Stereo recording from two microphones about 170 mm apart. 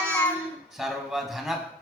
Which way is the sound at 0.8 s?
Centre (ahead or behind).